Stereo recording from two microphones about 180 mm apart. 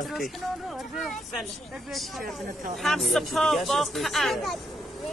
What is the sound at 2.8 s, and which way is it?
Speech, centre (ahead or behind).